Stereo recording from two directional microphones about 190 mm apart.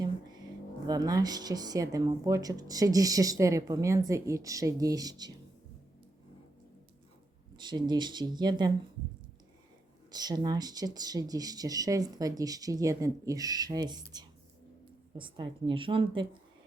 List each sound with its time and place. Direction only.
0.0 s music: 20° right (ahead or behind)
0.9 s speech: 20° right (ahead or behind)
7.5 s speech: 25° right (ahead or behind)
10.1 s speech: 20° right (ahead or behind)